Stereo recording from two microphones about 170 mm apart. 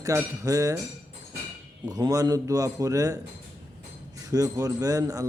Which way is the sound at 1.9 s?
20° right (ahead or behind).